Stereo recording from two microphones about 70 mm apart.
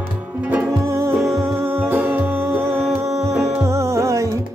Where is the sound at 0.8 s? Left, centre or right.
Right.